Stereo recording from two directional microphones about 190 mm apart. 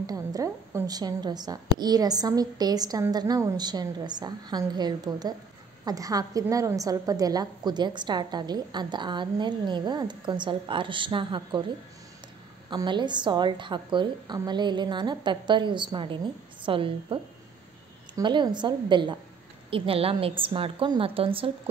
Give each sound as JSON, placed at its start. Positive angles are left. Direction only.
{"t": 0.0, "sound": "a woman's voice", "side_deg": -20}
{"t": 12.6, "sound": "a woman's voice", "side_deg": -25}